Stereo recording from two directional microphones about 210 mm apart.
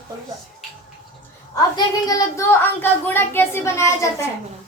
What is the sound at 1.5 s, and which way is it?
A woman's voice, 15° left (ahead or behind).